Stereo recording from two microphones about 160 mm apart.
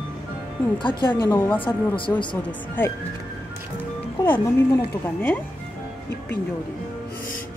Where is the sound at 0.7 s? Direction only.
30° left (ahead or behind).